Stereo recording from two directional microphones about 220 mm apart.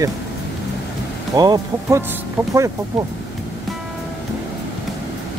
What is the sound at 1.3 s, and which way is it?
Speech, 15° right (ahead or behind).